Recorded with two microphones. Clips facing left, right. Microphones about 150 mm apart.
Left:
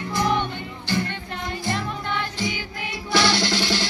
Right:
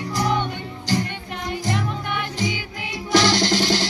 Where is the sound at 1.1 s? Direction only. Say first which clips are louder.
Right 1 dB; 15° right (ahead or behind).